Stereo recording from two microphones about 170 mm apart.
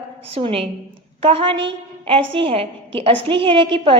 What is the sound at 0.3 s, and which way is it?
A woman's voice, 35° right (ahead or behind).